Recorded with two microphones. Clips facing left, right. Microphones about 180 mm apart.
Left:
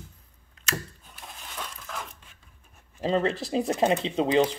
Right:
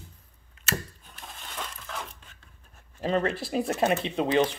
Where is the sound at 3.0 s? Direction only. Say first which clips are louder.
Left 1 dB; 25° left (ahead or behind).